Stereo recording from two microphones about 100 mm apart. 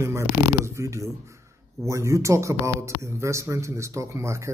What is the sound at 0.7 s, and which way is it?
Speech, 30° right (ahead or behind).